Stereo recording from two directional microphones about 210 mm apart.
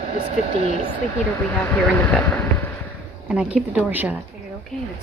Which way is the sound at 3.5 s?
5° right (ahead or behind).